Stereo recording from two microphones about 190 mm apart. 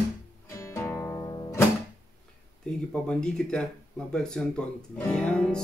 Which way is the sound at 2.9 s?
5° left (ahead or behind).